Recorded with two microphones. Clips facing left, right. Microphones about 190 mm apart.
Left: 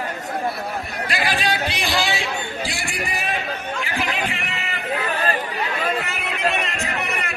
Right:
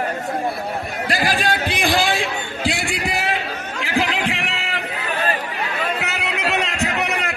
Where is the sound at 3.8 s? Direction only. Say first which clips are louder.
Right 6 dB; 90° right.